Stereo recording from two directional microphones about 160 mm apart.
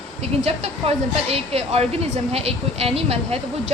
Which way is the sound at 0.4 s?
40° right (ahead or behind).